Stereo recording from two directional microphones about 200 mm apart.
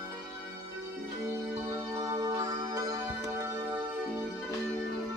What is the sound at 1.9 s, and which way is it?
Music, 15° right (ahead or behind).